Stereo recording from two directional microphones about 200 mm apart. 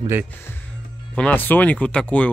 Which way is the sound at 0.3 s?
10° left (ahead or behind).